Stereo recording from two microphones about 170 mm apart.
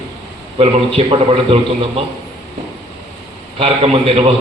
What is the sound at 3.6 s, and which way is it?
Speech, 35° right (ahead or behind).